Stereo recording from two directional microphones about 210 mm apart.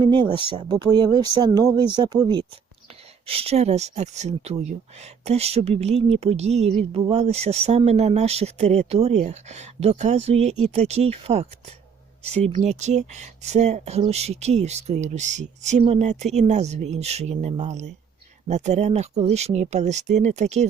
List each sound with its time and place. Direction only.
0.0 s speech: 20° right (ahead or behind)